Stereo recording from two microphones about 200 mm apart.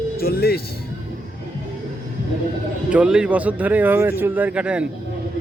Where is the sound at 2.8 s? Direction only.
5° right (ahead or behind).